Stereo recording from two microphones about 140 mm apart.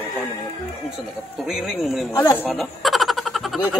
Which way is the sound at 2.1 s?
20° left (ahead or behind).